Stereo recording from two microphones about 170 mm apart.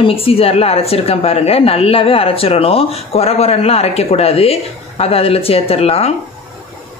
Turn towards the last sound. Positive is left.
turn(degrees=35)  # may be behind; listen again after turning